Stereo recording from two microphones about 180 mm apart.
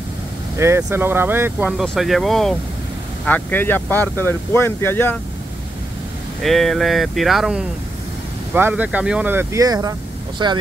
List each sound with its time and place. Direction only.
0.6 s speech: 15° right (ahead or behind); by 5.2 s 10° left (ahead or behind)
6.4 s speech: centre (ahead or behind); by 10.6 s 25° right (ahead or behind)